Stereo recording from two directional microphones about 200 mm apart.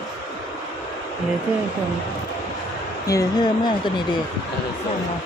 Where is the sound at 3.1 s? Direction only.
15° left (ahead or behind).